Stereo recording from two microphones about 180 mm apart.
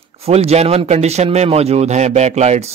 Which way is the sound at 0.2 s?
35° right (ahead or behind).